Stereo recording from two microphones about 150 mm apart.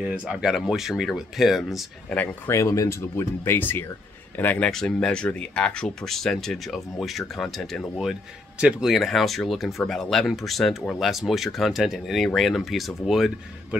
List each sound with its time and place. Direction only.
0.0 s speech: 5° right (ahead or behind)
2.1 s speech: 15° left (ahead or behind); by 13.7 s centre (ahead or behind)